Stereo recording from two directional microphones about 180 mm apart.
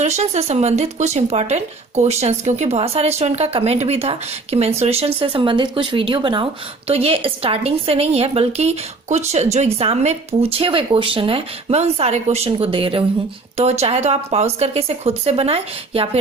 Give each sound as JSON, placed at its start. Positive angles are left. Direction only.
{"t": 0.0, "sound": "speech", "side_deg": -35}